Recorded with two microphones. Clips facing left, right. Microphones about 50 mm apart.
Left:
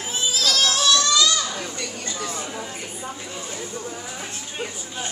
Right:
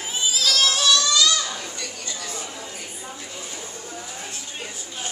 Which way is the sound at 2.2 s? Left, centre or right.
Left.